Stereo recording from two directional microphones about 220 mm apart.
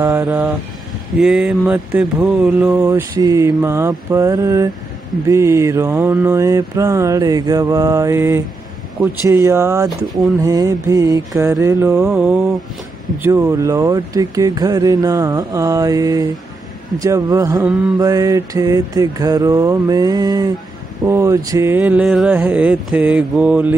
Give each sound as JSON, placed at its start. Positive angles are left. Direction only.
{"t": 0.0, "sound": "mantra", "side_deg": -10}
{"t": 9.8, "sound": "speech", "side_deg": 0}
{"t": 10.4, "sound": "mantra", "side_deg": -15}